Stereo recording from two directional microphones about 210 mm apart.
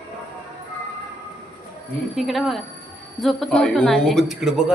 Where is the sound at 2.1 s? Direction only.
Centre (ahead or behind).